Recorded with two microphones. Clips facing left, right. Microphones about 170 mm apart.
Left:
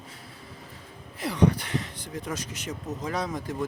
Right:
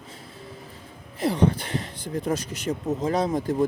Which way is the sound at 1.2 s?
25° right (ahead or behind).